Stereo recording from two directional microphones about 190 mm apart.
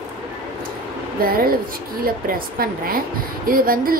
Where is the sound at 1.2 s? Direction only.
50° right (ahead or behind).